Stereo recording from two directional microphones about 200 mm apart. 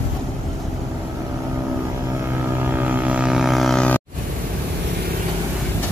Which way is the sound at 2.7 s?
10° right (ahead or behind).